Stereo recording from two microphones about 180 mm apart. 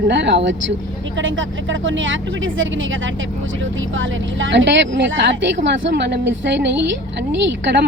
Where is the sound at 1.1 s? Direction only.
90° right.